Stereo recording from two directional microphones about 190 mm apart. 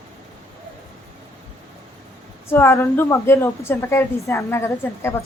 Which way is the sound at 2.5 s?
15° left (ahead or behind).